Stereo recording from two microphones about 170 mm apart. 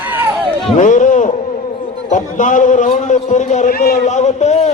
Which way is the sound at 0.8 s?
45° left (ahead or behind).